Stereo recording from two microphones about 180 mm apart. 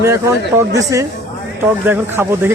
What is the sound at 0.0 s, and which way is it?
Speech, 15° right (ahead or behind).